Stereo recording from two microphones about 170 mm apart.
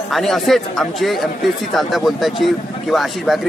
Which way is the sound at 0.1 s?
Centre (ahead or behind).